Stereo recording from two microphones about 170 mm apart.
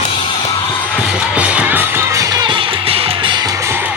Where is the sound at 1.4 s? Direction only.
10° right (ahead or behind); by 3.5 s 25° right (ahead or behind).